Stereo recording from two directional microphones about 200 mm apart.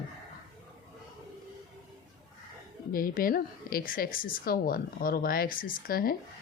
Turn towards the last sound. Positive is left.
turn(degrees=45)  # may be behind; listen again after turning